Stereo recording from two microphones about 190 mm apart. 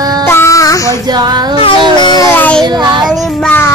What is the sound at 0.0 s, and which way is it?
Music, 20° right (ahead or behind).